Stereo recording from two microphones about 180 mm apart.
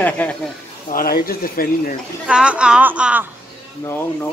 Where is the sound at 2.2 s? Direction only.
5° right (ahead or behind).